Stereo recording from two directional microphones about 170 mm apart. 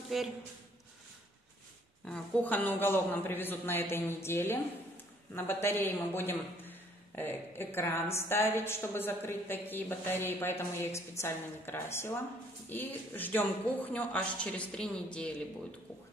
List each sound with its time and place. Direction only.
0.1 s a man's voice: centre (ahead or behind)
2.0 s a man's voice: 5° left (ahead or behind)